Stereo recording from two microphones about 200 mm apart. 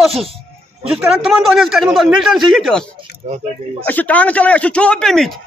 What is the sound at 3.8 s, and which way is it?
A man's voice, 10° left (ahead or behind).